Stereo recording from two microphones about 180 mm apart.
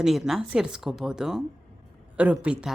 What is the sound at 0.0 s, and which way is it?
Speech, centre (ahead or behind).